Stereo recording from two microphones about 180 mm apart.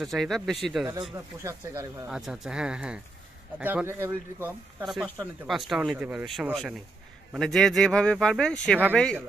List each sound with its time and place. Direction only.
0.0 s speech: centre (ahead or behind)
1.1 s speech: 15° right (ahead or behind)
2.0 s speech: centre (ahead or behind)
4.8 s speech: centre (ahead or behind)